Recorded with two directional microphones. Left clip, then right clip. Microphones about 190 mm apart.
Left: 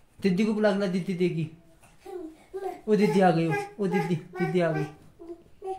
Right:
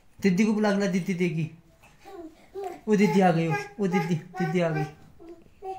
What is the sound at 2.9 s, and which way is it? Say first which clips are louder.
A woman's voice: even; 15° left (ahead or behind).